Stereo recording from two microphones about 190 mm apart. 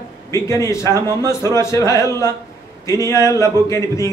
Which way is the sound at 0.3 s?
15° left (ahead or behind).